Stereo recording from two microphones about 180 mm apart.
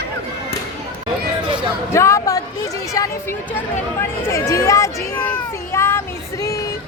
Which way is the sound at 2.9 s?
15° left (ahead or behind).